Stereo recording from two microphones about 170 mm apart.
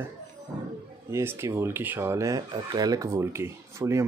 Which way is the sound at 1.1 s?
15° right (ahead or behind).